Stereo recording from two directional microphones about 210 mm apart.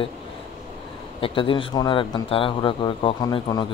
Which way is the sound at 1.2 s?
25° left (ahead or behind).